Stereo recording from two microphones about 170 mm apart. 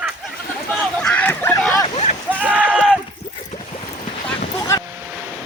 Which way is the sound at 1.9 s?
40° left (ahead or behind).